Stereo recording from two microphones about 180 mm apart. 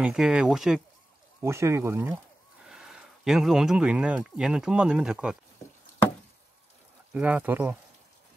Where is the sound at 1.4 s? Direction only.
15° right (ahead or behind).